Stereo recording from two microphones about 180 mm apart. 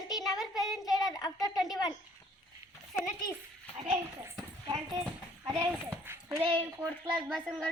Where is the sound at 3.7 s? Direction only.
30° right (ahead or behind).